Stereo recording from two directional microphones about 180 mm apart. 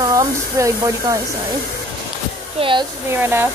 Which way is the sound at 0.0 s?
20° right (ahead or behind).